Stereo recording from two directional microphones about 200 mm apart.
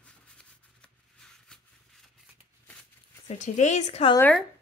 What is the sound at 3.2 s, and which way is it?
Speech, 35° left (ahead or behind).